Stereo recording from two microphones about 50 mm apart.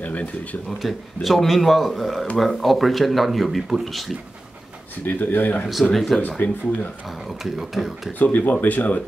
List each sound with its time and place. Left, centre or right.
0.0 s speech: left
0.7 s speech: centre
5.0 s speech: left
7.4 s speech: centre
8.2 s speech: left